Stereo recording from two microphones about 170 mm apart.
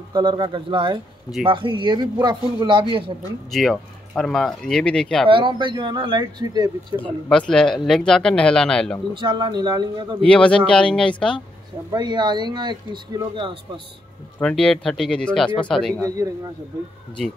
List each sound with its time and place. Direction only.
0.1 s speech: 25° right (ahead or behind)
3.5 s speech: 5° left (ahead or behind)
5.3 s speech: 30° right (ahead or behind)
7.2 s speech: 5° left (ahead or behind)
9.1 s speech: 25° right (ahead or behind)
10.2 s speech: 5° left (ahead or behind)
11.9 s speech: 25° right (ahead or behind)
14.4 s speech: 5° left (ahead or behind)